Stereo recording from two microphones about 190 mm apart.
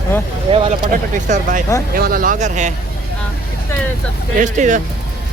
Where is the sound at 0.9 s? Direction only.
45° right (ahead or behind).